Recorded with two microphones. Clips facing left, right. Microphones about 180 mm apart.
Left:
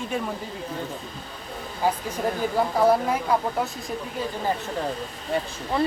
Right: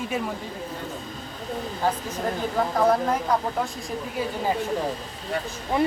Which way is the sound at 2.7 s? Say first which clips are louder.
Left 1 dB; 10° left (ahead or behind).